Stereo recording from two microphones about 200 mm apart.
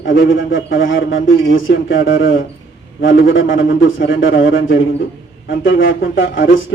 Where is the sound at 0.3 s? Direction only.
70° left (ahead or behind).